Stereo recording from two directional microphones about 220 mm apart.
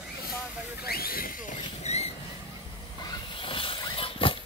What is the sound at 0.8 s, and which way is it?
Hiss, 45° left (ahead or behind).